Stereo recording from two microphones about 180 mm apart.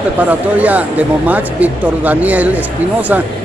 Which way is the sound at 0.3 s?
10° right (ahead or behind).